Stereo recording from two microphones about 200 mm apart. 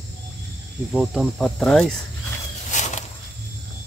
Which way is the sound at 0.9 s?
Centre (ahead or behind).